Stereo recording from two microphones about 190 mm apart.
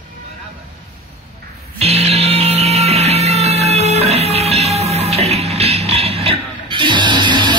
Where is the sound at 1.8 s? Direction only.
35° right (ahead or behind).